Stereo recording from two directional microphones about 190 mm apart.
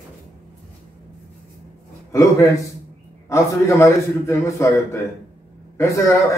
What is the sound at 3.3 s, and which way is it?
A man's voice, 15° left (ahead or behind).